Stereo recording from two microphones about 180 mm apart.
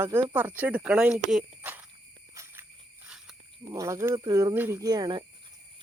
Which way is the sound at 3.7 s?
20° right (ahead or behind).